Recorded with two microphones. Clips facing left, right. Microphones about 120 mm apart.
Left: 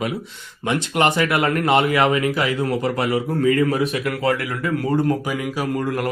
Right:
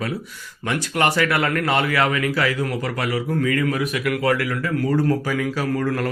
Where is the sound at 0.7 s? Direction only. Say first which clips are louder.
Left 2 dB; 20° left (ahead or behind).